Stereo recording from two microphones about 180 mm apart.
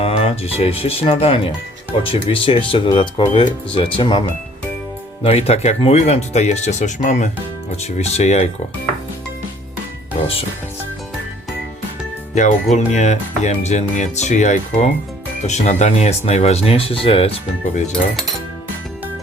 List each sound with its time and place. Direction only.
0.0 s speech: 30° left (ahead or behind)
5.2 s speech: 35° left (ahead or behind)
12.3 s speech: 45° left (ahead or behind)